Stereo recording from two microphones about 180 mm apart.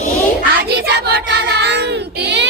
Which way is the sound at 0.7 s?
65° right (ahead or behind).